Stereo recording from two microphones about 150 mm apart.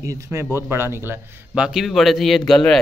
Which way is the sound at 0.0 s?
20° right (ahead or behind).